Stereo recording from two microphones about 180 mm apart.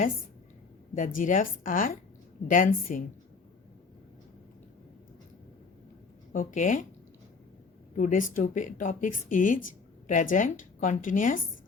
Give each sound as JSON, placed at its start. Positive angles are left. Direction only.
{"t": 0.9, "sound": "speech", "side_deg": 45}
{"t": 6.3, "sound": "speech", "side_deg": 45}
{"t": 7.9, "sound": "speech", "side_deg": 45}